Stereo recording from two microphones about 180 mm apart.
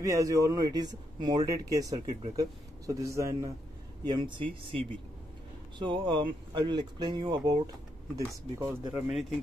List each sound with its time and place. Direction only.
0.0 s a man's voice: 20° right (ahead or behind)
4.1 s a man's voice: 25° right (ahead or behind)